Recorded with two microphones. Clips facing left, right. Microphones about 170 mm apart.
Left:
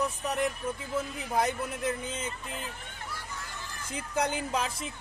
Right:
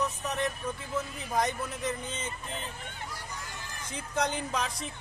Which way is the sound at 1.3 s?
10° left (ahead or behind).